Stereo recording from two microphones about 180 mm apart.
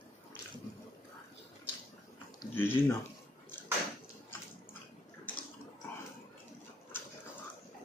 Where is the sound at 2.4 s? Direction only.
15° left (ahead or behind).